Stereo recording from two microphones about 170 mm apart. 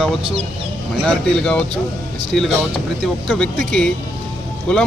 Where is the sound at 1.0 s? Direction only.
5° left (ahead or behind).